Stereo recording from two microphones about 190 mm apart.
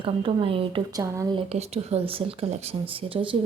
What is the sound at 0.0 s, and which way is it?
A woman's voice, 25° right (ahead or behind).